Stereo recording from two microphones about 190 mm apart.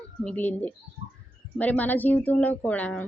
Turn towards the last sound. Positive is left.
turn(degrees=10)  # may be behind; listen again after turning